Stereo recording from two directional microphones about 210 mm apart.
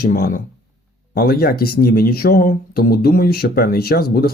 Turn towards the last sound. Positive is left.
turn(degrees=45)  # may be behind; listen again after turning